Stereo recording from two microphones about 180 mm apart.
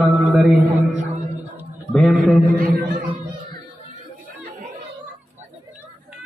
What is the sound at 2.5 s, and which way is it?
Speech, 55° right (ahead or behind).